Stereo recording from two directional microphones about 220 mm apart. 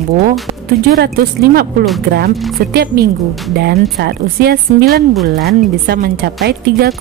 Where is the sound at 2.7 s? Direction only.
45° right (ahead or behind).